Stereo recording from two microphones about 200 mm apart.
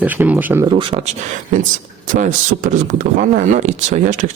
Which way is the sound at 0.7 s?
25° right (ahead or behind).